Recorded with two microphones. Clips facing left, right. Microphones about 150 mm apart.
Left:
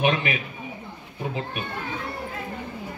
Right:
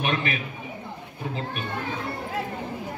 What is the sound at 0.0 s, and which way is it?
Speech, 15° left (ahead or behind).